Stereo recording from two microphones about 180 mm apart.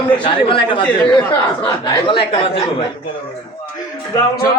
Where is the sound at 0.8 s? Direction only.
10° left (ahead or behind).